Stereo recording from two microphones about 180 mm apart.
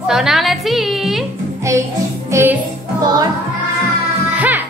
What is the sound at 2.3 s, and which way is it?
Music, 15° right (ahead or behind).